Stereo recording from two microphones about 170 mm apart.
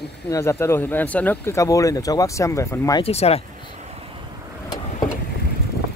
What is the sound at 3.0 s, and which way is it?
Speech, 35° left (ahead or behind).